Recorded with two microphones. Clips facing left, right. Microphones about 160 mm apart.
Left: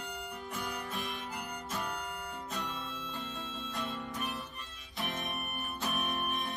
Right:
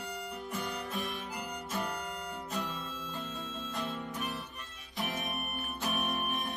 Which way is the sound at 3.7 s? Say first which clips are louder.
Right 1 dB; centre (ahead or behind).